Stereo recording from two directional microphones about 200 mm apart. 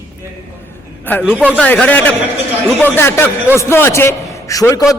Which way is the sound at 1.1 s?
10° left (ahead or behind).